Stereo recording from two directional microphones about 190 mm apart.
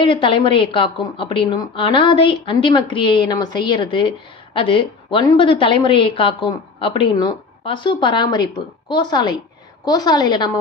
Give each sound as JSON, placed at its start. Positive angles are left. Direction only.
{"t": 0.0, "sound": "a woman's voice", "side_deg": 25}